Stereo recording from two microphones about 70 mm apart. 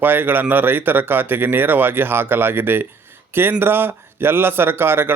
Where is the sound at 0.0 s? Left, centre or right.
Right.